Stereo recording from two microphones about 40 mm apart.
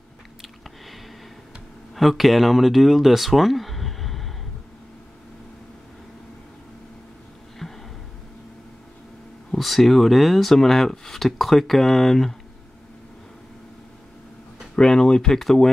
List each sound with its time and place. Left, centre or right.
0.4 s biting: centre
2.0 s speech: centre
7.6 s a sound: centre
9.5 s speech: centre
14.8 s speech: centre